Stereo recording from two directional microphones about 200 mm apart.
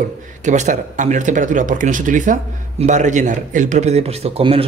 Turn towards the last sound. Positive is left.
turn(degrees=-30)  # may be behind; listen again after turning